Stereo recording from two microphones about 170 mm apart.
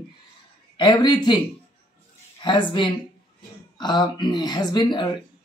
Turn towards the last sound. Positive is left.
turn(degrees=25)  # may be behind; listen again after turning